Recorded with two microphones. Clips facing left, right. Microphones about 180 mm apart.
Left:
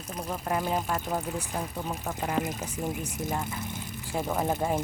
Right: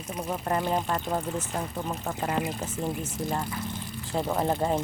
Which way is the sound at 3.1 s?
20° left (ahead or behind).